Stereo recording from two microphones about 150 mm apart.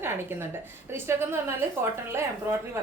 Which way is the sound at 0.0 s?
15° right (ahead or behind).